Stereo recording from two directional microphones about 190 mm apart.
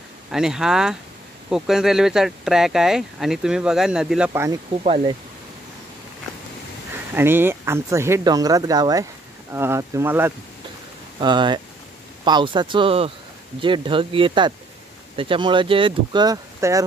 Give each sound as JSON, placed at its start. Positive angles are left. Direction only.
{"t": 0.3, "sound": "speech", "side_deg": 0}
{"t": 4.3, "sound": "speech", "side_deg": -20}
{"t": 4.8, "sound": "speech", "side_deg": -30}
{"t": 7.2, "sound": "speech", "side_deg": -10}
{"t": 11.1, "sound": "speech", "side_deg": -25}